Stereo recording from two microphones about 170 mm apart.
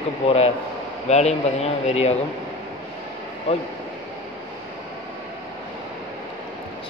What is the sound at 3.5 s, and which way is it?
Speech, 35° left (ahead or behind).